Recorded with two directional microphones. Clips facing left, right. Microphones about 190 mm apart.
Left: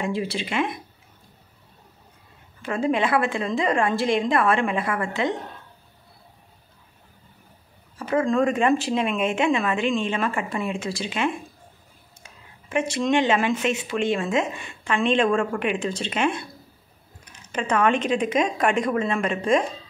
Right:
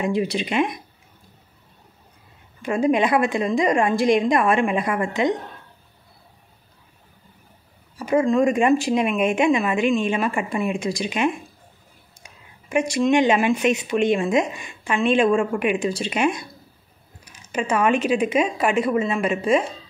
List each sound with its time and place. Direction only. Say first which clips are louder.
0.0 s speech: right 4 dB; 15° right (ahead or behind)
2.6 s speech: right 4 dB; 15° right (ahead or behind)
8.0 s speech: right 3 dB; 10° right (ahead or behind)